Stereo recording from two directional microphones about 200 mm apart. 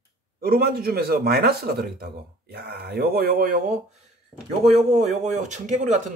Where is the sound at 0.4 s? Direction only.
50° right (ahead or behind).